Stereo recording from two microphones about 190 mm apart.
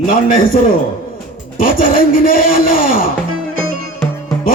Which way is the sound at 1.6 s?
45° left (ahead or behind).